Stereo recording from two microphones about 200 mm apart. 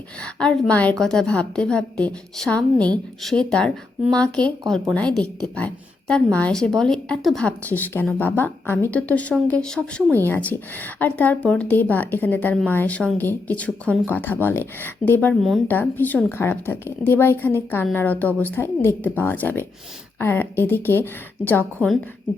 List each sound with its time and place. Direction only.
0.2 s a woman's voice: 5° left (ahead or behind)